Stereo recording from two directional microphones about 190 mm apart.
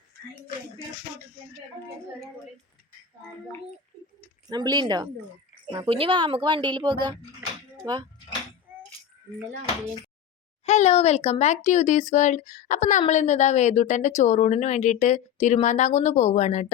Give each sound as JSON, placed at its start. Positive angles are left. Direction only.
{"t": 4.4, "sound": "a woman's voice", "side_deg": -20}
{"t": 8.7, "sound": "rattle", "side_deg": -10}
{"t": 10.7, "sound": "speech", "side_deg": 35}